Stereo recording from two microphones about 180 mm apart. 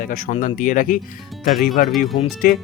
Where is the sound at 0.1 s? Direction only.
45° left (ahead or behind).